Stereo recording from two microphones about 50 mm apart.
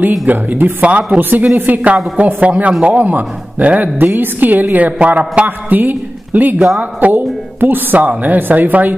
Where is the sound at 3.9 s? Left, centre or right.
Right.